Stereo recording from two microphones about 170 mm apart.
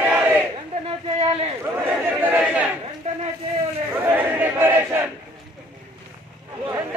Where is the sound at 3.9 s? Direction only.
10° right (ahead or behind).